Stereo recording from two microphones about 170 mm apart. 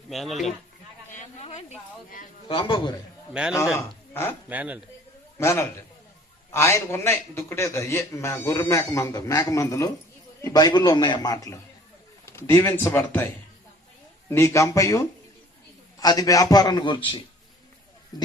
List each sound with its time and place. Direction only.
0.1 s speech: centre (ahead or behind)
1.1 s a sound: 40° left (ahead or behind)
2.5 s a man's voice: 30° left (ahead or behind)
3.8 s speech: 15° left (ahead or behind)
4.4 s speech: 10° right (ahead or behind)
5.4 s a man's voice: 15° left (ahead or behind); by 17.2 s 30° left (ahead or behind)
18.1 s a sound: 25° left (ahead or behind)